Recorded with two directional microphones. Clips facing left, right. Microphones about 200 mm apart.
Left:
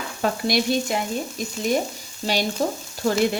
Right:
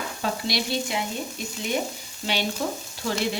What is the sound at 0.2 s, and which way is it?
Speech, 50° left (ahead or behind).